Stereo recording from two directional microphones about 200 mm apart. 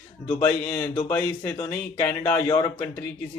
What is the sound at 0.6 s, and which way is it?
Speech, 20° left (ahead or behind).